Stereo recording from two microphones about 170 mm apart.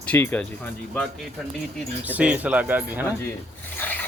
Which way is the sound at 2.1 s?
10° right (ahead or behind).